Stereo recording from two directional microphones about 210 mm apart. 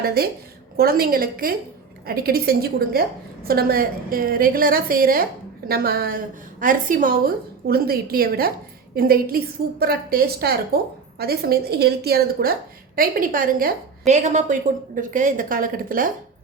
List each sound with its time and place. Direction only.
0.0 s a woman's voice: 45° right (ahead or behind)